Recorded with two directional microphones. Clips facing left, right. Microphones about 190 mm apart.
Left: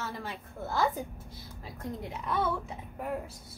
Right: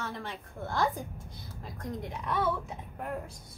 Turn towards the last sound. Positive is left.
turn(degrees=5)  # may be behind; listen again after turning